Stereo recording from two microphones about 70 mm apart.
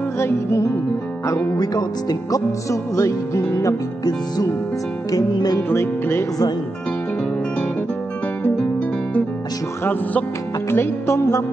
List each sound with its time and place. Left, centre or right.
0.2 s music: left
1.6 s speech: left
2.7 s music: left
3.6 s speech: left
10.7 s music: left